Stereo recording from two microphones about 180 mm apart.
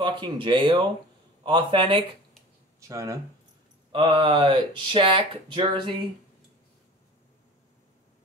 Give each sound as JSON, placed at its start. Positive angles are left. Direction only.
{"t": 0.0, "sound": "speech", "side_deg": -25}
{"t": 3.9, "sound": "speech", "side_deg": -30}